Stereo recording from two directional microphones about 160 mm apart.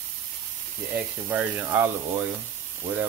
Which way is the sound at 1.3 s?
10° right (ahead or behind).